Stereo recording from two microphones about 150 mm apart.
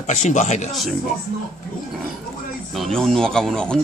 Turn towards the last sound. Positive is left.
turn(degrees=5)  # may be behind; listen again after turning